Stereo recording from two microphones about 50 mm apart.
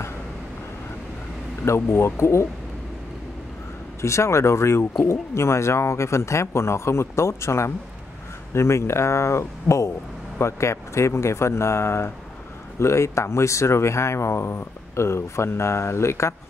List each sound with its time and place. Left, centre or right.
1.7 s speech: left
4.0 s speech: left
12.7 s speech: left